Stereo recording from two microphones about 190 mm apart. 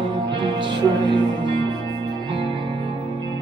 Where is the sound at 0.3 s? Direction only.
25° right (ahead or behind).